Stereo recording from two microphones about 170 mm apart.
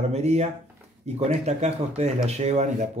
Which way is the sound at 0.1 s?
40° right (ahead or behind).